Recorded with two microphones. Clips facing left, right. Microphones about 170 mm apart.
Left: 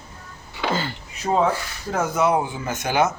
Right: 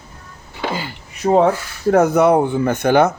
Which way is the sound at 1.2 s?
55° right (ahead or behind).